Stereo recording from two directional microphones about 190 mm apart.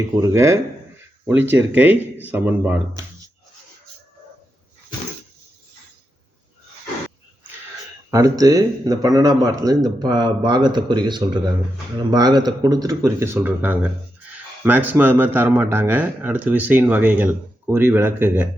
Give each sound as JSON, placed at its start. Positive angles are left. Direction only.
{"t": 0.2, "sound": "speech", "side_deg": -15}
{"t": 8.1, "sound": "speech", "side_deg": -20}